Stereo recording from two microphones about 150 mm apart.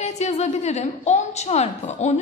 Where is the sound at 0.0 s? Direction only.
50° left (ahead or behind).